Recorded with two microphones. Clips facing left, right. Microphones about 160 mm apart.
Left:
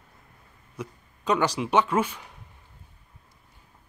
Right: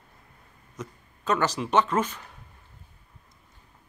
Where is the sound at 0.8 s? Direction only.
15° left (ahead or behind).